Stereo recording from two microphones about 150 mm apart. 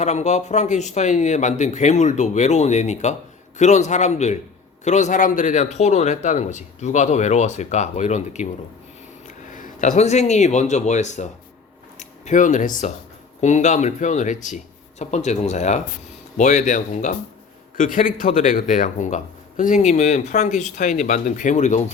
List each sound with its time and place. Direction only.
0.0 s speech: 50° left (ahead or behind)